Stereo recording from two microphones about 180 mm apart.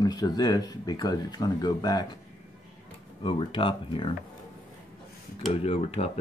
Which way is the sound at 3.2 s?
30° left (ahead or behind).